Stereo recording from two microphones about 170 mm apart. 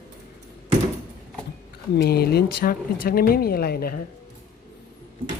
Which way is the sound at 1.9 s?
70° left (ahead or behind).